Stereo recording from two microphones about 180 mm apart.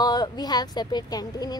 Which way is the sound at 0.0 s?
20° left (ahead or behind).